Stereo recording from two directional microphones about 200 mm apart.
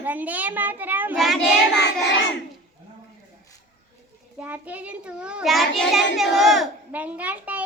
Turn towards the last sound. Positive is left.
turn(degrees=-5)  # may be behind; listen again after turning